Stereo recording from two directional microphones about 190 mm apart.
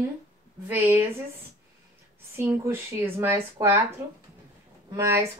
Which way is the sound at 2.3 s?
10° right (ahead or behind).